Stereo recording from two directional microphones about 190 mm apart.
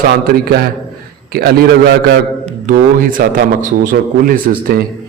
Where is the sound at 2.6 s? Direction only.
45° right (ahead or behind).